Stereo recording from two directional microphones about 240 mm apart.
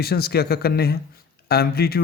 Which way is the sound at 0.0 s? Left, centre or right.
Left.